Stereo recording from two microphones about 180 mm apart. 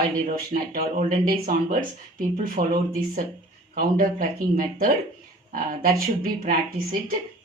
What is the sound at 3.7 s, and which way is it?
Speech, 50° right (ahead or behind).